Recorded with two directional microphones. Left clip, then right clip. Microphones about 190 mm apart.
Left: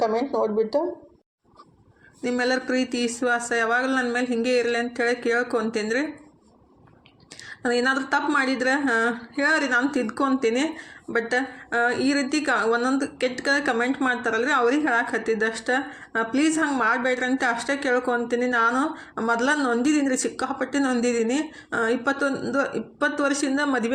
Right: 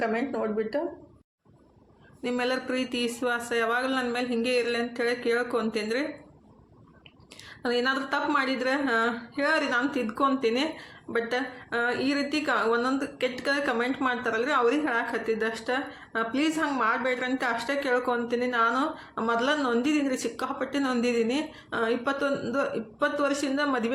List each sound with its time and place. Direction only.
0.0 s a woman's voice: 20° left (ahead or behind)
2.2 s a woman's voice: 20° left (ahead or behind)
7.6 s a woman's voice: 20° left (ahead or behind)